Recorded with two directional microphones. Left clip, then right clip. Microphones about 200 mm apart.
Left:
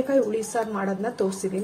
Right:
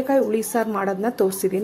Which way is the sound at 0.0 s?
40° right (ahead or behind).